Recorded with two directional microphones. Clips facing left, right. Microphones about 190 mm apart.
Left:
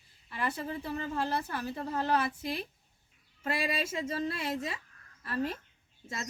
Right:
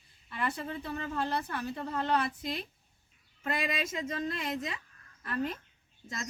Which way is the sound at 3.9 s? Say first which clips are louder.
Left 1 dB; 30° left (ahead or behind).